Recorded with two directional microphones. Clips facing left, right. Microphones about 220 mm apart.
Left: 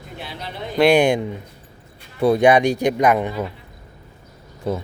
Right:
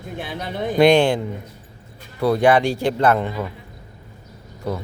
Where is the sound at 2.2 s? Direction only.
20° left (ahead or behind).